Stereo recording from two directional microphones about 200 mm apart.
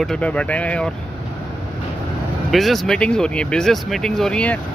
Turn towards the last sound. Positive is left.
turn(degrees=5)  # may be behind; listen again after turning